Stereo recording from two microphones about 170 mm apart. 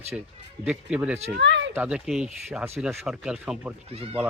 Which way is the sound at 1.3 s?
90° right.